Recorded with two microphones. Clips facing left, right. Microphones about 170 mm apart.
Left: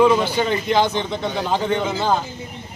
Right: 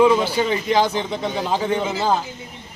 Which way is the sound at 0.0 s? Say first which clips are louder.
Even; 5° right (ahead or behind).